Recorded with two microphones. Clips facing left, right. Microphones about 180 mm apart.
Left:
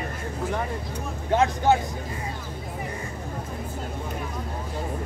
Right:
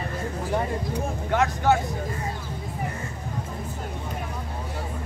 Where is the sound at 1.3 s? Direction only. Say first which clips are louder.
Left 2 dB; 20° left (ahead or behind).